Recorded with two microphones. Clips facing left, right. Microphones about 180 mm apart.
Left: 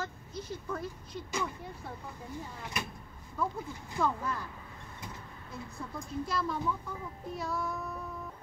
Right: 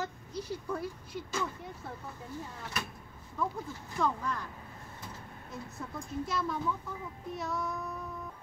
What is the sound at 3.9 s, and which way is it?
Speech, 5° left (ahead or behind).